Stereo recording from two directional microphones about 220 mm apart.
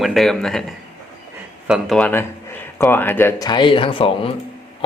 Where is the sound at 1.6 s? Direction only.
Centre (ahead or behind).